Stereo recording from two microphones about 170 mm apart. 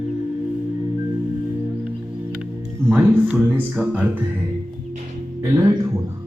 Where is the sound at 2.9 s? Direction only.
10° right (ahead or behind).